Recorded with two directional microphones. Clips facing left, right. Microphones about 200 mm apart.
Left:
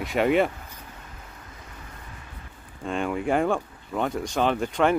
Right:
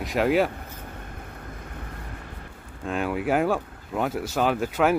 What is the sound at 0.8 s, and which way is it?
Vehicle, 55° right (ahead or behind).